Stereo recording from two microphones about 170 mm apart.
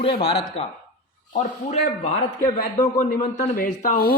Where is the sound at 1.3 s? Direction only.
50° left (ahead or behind).